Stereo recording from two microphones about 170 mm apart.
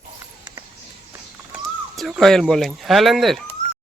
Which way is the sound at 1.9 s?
Centre (ahead or behind).